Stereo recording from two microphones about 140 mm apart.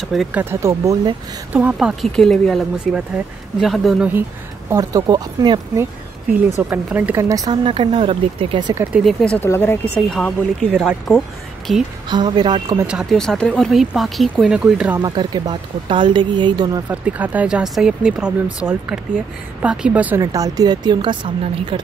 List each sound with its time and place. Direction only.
0.0 s speech: centre (ahead or behind)
0.4 s speech: 20° right (ahead or behind); by 4.1 s centre (ahead or behind)
4.6 s speech: 25° right (ahead or behind)
6.7 s speech: 10° right (ahead or behind)
7.2 s speech: 25° right (ahead or behind)
7.6 s speech: 40° right (ahead or behind)
8.9 s speech: 5° left (ahead or behind)
12.1 s speech: 30° right (ahead or behind)
12.8 s speech: 5° right (ahead or behind)
13.2 s speech: 5° left (ahead or behind)
15.0 s speech: 30° right (ahead or behind)
16.9 s speech: 10° right (ahead or behind)
20.2 s speech: 25° right (ahead or behind)